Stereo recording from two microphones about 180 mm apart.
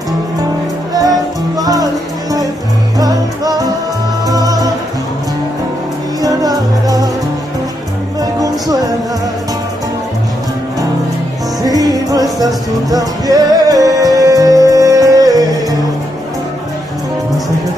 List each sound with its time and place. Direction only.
1.6 s music: 20° right (ahead or behind)
3.0 s music: 20° right (ahead or behind)
6.2 s music: 20° right (ahead or behind)
8.2 s music: 20° right (ahead or behind)
11.6 s music: 20° right (ahead or behind)